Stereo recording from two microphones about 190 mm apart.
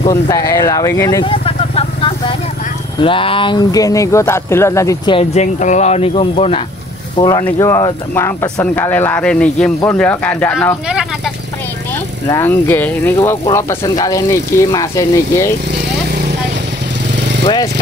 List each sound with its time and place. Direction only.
0.1 s speech: 20° left (ahead or behind)
1.3 s vehicle: 30° left (ahead or behind)
3.0 s speech: 25° left (ahead or behind)
5.1 s speech: 35° left (ahead or behind); by 10.8 s 10° left (ahead or behind)
10.9 s vehicle: 5° right (ahead or behind)
12.3 s speech: 10° left (ahead or behind)